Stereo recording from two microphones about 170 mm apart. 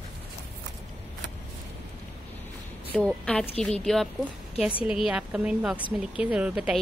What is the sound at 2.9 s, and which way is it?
A woman's voice, 5° left (ahead or behind).